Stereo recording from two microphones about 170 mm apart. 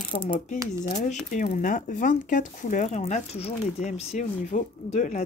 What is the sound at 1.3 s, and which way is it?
Speech, 50° left (ahead or behind).